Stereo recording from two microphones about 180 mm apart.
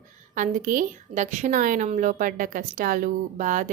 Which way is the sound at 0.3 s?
45° right (ahead or behind).